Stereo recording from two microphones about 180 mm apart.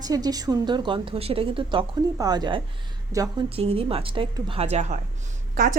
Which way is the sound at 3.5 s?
30° right (ahead or behind).